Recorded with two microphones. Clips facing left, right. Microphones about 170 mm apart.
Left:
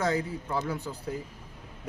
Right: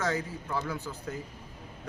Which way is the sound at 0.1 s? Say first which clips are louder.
Left 3 dB; 15° left (ahead or behind).